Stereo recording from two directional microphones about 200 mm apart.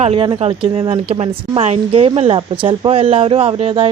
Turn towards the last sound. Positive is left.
turn(degrees=-30)  # may be behind; listen again after turning